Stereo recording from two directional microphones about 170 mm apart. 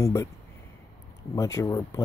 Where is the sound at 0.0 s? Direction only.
15° left (ahead or behind).